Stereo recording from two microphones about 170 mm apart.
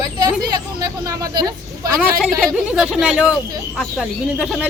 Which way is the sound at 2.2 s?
5° right (ahead or behind).